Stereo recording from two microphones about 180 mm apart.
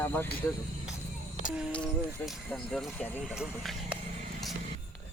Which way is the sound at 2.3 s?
Centre (ahead or behind).